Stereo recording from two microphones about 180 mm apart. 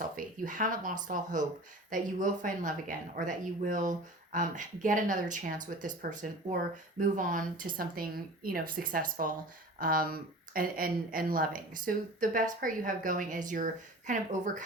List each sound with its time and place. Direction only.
0.4 s speech: 45° right (ahead or behind)